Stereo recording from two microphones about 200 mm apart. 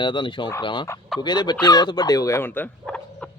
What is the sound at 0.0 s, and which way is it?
Speech, 25° left (ahead or behind).